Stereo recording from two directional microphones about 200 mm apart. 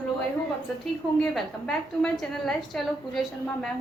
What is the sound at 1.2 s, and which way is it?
A woman's voice, 5° left (ahead or behind).